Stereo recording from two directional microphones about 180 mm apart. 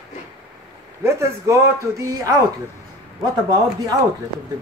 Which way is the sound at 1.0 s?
15° right (ahead or behind).